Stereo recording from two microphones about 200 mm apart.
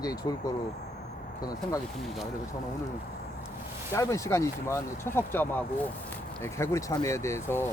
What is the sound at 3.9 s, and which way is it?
Speech, 15° left (ahead or behind).